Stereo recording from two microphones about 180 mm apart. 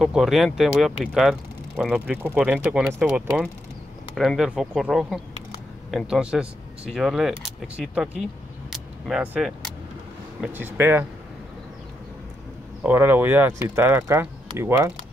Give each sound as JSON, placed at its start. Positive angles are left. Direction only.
{"t": 0.0, "sound": "speech", "side_deg": 0}
{"t": 12.8, "sound": "speech", "side_deg": -10}